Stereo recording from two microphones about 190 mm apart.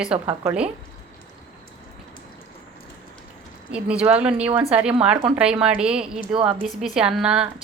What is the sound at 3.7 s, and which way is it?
Speech, 5° right (ahead or behind).